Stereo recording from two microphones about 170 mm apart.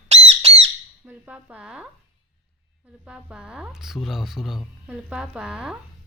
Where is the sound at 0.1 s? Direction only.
40° right (ahead or behind).